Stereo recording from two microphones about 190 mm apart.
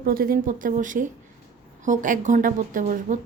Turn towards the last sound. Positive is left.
turn(degrees=-45)  # may be behind; listen again after turning